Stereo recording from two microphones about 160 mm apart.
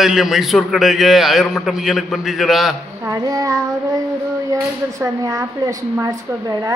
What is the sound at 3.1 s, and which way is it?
A woman's voice, 25° right (ahead or behind).